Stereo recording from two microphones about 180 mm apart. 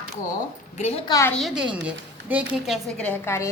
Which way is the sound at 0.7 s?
40° left (ahead or behind).